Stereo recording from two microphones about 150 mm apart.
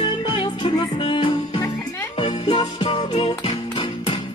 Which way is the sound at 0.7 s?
35° left (ahead or behind).